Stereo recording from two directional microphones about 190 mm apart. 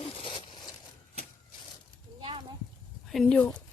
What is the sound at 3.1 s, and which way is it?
Speech, 5° left (ahead or behind).